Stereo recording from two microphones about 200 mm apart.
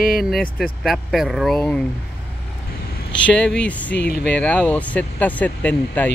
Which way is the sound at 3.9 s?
55° left (ahead or behind).